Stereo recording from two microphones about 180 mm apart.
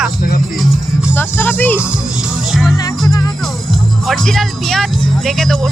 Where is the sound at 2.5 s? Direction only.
Centre (ahead or behind).